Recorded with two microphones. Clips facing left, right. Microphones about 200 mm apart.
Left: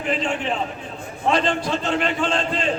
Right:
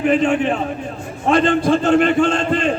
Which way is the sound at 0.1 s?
55° right (ahead or behind).